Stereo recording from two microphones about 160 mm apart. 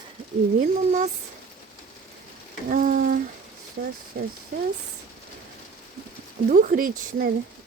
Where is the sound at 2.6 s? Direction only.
55° right (ahead or behind).